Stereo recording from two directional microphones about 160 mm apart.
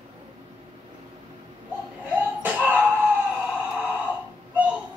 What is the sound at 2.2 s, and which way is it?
Slap, 10° right (ahead or behind).